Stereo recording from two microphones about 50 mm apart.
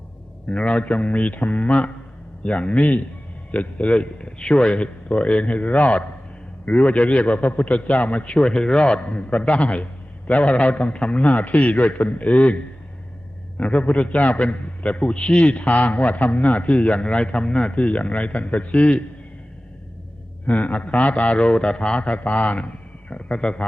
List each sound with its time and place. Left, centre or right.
0.4 s a man's voice: left
20.5 s a man's voice: left